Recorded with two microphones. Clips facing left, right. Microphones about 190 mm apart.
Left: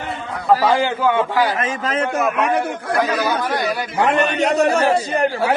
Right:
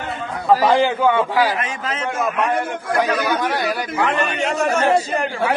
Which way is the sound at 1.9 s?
60° left (ahead or behind).